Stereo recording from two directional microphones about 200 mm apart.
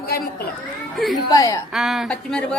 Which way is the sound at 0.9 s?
Centre (ahead or behind).